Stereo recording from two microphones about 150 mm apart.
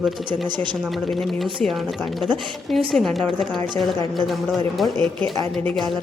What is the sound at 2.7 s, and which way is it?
Speech, centre (ahead or behind).